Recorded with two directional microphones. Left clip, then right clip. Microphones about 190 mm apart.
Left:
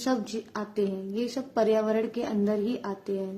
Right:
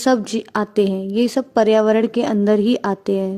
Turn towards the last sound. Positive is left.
turn(degrees=-50)  # may be behind; listen again after turning